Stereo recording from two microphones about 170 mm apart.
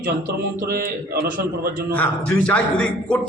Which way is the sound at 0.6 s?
60° right (ahead or behind).